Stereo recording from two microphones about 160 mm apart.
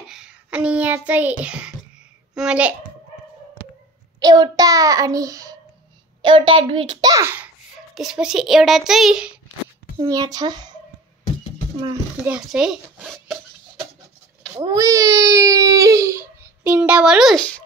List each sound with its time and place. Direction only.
0.1 s child singing: 5° right (ahead or behind)
2.3 s a child's voice: 5° right (ahead or behind)
4.2 s speech: 25° right (ahead or behind)
6.2 s a child's voice: 30° right (ahead or behind); by 7.4 s 15° right (ahead or behind)
7.9 s a child's voice: 5° right (ahead or behind)
9.9 s speech: 20° right (ahead or behind)
12.3 s a child's voice: 5° right (ahead or behind)
14.6 s speech: 20° right (ahead or behind); by 17.5 s centre (ahead or behind)